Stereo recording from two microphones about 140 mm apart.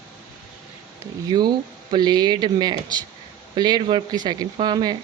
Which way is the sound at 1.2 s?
30° right (ahead or behind).